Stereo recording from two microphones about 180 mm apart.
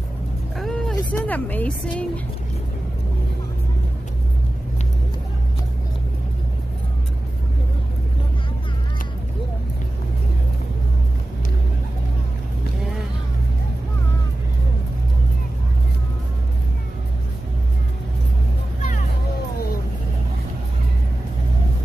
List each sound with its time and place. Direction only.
0.6 s vehicle: centre (ahead or behind)
1.1 s speech: 10° left (ahead or behind)
18.8 s music: 45° left (ahead or behind)